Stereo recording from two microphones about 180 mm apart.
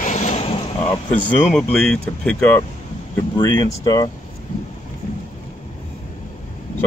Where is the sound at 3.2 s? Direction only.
20° left (ahead or behind).